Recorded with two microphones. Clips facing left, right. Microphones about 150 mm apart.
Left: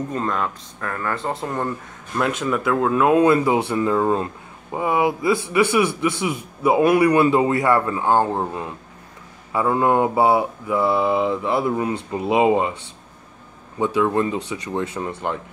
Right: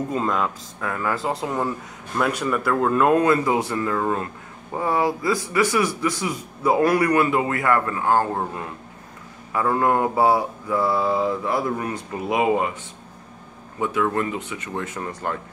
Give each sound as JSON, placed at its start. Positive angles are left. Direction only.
{"t": 0.1, "sound": "speech", "side_deg": -5}
{"t": 3.3, "sound": "mantra", "side_deg": 25}
{"t": 13.7, "sound": "mantra", "side_deg": 25}